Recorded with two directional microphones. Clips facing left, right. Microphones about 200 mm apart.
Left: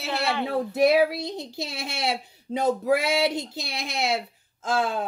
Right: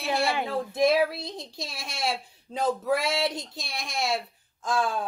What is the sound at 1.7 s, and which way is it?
Speech, 20° left (ahead or behind).